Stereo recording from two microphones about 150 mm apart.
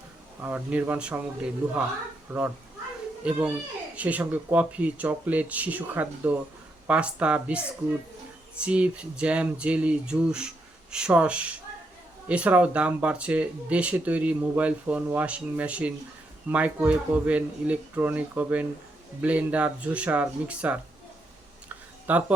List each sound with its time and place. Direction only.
0.4 s speech: 10° right (ahead or behind)
8.6 s speech: 5° right (ahead or behind)
22.0 s speech: 10° right (ahead or behind)